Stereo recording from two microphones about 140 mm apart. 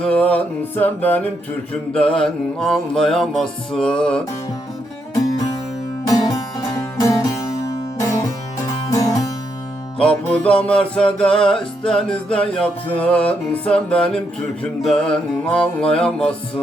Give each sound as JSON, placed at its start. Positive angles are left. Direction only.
{"t": 0.0, "sound": "music", "side_deg": 10}
{"t": 6.1, "sound": "music", "side_deg": 25}
{"t": 8.7, "sound": "music", "side_deg": 25}
{"t": 10.0, "sound": "music", "side_deg": 10}